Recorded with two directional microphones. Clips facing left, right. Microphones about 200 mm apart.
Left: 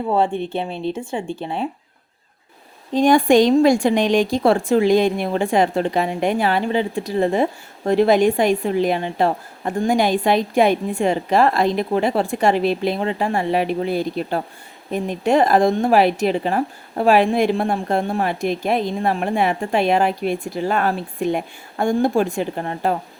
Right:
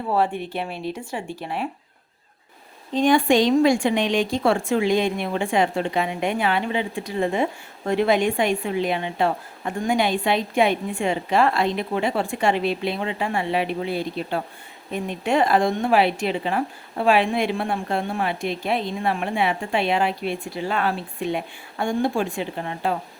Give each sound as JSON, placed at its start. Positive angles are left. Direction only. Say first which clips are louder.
{"t": 0.1, "sound": "speech", "louder": "left 3 dB", "side_deg": 25}
{"t": 2.9, "sound": "a woman's voice", "louder": "left 4 dB", "side_deg": 40}